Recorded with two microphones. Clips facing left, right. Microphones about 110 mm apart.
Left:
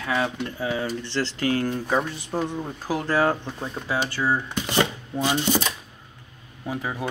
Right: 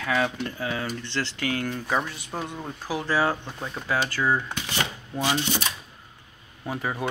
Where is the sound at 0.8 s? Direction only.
30° left (ahead or behind).